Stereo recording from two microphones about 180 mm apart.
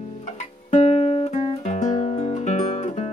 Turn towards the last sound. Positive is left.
turn(degrees=40)  # may be behind; listen again after turning